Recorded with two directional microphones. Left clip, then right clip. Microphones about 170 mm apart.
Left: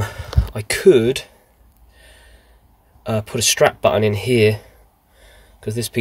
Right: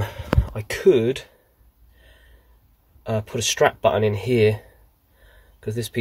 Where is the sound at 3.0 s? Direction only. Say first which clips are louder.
Left 4 dB; 10° left (ahead or behind).